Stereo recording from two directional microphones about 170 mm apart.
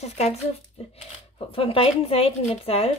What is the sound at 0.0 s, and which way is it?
Speech, 40° left (ahead or behind).